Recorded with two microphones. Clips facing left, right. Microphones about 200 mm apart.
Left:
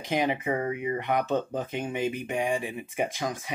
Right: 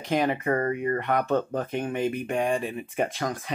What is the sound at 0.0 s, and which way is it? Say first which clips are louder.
Speech: right 2 dB; 15° left (ahead or behind).